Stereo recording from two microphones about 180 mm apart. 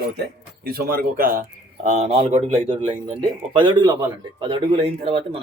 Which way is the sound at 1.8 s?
40° right (ahead or behind).